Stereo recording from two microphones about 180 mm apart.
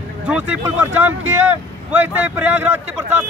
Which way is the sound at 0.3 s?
10° right (ahead or behind).